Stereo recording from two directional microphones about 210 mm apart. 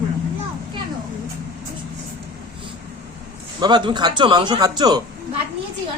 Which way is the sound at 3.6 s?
20° right (ahead or behind).